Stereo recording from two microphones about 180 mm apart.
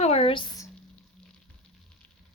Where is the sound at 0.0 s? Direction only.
35° left (ahead or behind).